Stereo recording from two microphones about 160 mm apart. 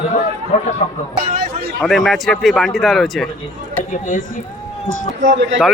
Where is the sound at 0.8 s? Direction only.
45° left (ahead or behind).